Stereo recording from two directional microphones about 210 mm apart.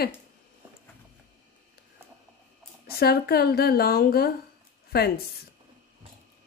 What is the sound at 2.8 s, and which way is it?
Speech, 45° left (ahead or behind).